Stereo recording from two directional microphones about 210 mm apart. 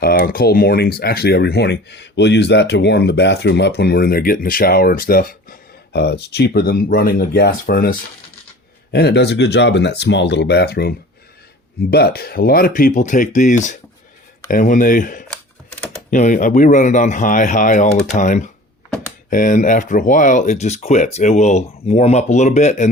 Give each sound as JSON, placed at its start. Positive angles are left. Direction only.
{"t": 0.0, "sound": "speech", "side_deg": 45}